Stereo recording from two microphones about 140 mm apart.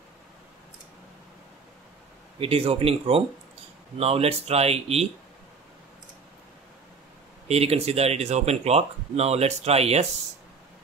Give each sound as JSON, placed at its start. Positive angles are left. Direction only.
{"t": 2.4, "sound": "speech", "side_deg": -45}
{"t": 7.4, "sound": "speech", "side_deg": -45}